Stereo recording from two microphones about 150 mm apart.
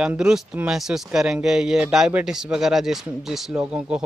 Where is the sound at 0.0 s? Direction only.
5° right (ahead or behind).